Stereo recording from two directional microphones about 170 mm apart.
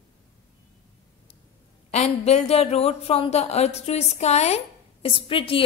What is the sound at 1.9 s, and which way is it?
A woman's voice, 40° left (ahead or behind).